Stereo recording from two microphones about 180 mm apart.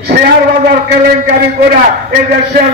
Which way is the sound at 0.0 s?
60° right (ahead or behind).